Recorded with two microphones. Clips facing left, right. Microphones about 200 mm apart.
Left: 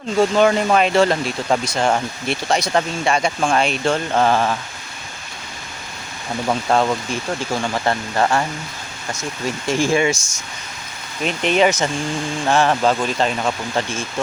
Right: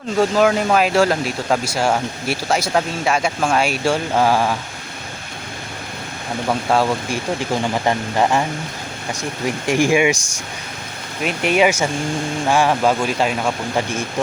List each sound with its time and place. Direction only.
0.2 s speech: 5° right (ahead or behind)
6.5 s speech: 5° right (ahead or behind)
7.3 s speech: 15° right (ahead or behind)
9.5 s speech: 15° right (ahead or behind)
11.2 s speech: 5° right (ahead or behind)